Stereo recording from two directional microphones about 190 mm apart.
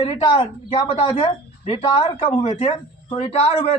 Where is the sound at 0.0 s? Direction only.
25° left (ahead or behind).